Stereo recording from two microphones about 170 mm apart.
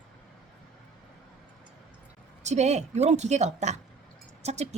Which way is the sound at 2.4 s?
40° right (ahead or behind).